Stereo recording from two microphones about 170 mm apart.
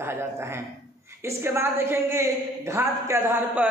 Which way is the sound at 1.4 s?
15° right (ahead or behind).